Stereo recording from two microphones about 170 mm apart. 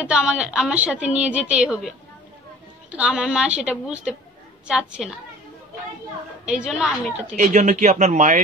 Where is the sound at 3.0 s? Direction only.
5° right (ahead or behind).